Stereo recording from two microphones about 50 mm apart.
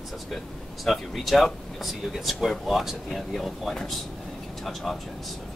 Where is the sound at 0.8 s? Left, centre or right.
Centre.